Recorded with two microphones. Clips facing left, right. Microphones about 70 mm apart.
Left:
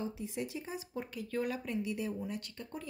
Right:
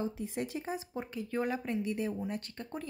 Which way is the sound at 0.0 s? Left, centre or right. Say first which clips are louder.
Right 3 dB; right.